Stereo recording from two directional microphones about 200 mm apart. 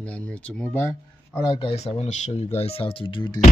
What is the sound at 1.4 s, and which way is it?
Speech, 30° left (ahead or behind).